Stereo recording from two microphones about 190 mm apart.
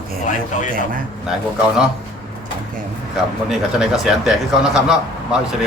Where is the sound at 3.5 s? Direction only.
Centre (ahead or behind).